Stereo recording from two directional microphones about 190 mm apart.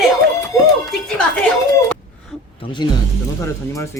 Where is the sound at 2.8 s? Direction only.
25° left (ahead or behind).